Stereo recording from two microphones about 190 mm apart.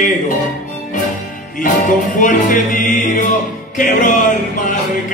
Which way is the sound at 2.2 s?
45° left (ahead or behind).